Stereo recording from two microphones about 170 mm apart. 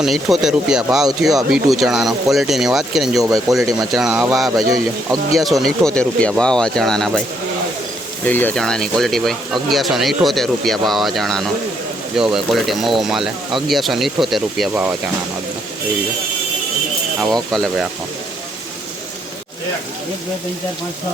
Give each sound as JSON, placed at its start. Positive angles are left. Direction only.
{"t": 0.0, "sound": "speech", "side_deg": 0}
{"t": 3.2, "sound": "speech", "side_deg": -20}
{"t": 3.5, "sound": "speech", "side_deg": 0}
{"t": 8.2, "sound": "speech", "side_deg": 10}
{"t": 17.2, "sound": "speech", "side_deg": 0}